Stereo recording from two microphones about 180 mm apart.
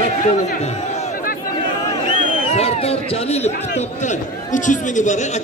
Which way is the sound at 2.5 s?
35° left (ahead or behind).